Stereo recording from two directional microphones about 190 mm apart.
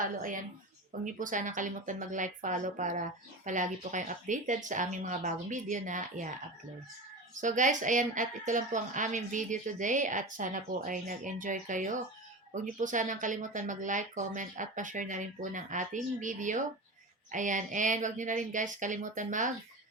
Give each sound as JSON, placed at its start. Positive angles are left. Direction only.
{"t": 0.0, "sound": "a woman's voice", "side_deg": -45}
{"t": 7.3, "sound": "a woman's voice", "side_deg": -40}